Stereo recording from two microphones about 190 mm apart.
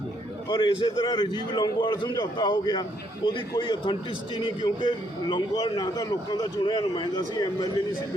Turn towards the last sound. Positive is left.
turn(degrees=20)  # may be behind; listen again after turning